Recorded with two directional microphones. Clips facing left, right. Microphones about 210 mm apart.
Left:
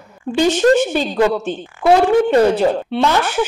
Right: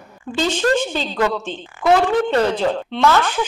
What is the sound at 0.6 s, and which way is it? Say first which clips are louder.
A woman's voice: left 5 dB; 25° left (ahead or behind).